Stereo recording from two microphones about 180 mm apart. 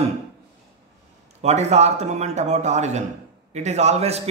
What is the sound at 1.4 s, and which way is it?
Speech, 40° right (ahead or behind).